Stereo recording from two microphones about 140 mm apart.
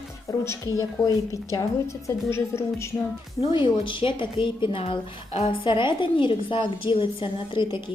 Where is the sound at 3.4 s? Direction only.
35° left (ahead or behind).